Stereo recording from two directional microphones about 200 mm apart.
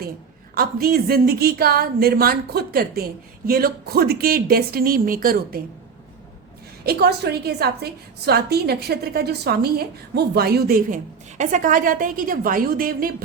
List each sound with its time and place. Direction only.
0.5 s a woman's voice: 50° right (ahead or behind)
6.8 s a woman's voice: 50° right (ahead or behind)